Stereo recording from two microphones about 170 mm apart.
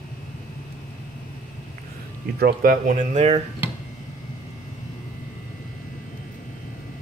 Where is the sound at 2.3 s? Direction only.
60° right (ahead or behind).